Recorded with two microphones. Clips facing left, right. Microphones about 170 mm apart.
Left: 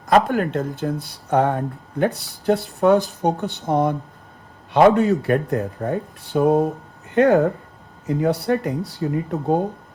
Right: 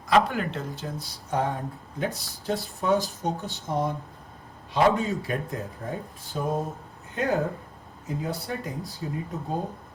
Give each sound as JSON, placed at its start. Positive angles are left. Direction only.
{"t": 0.0, "sound": "speech", "side_deg": 50}